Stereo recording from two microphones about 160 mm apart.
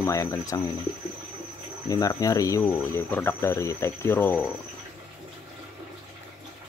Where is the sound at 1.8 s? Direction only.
20° left (ahead or behind).